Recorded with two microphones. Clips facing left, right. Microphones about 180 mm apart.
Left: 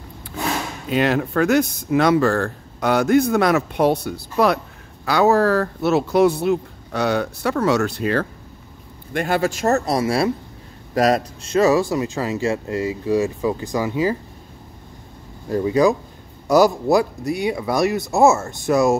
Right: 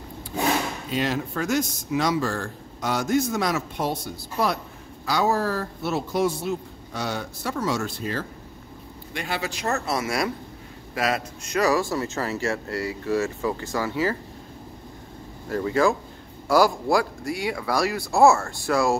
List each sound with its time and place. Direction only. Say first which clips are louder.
0.8 s speech: left 11 dB; 65° left (ahead or behind)
9.1 s a man's voice: left 10 dB; 50° left (ahead or behind)
11.5 s speech: left 6 dB; 20° left (ahead or behind)
15.5 s speech: left 5 dB; 20° left (ahead or behind)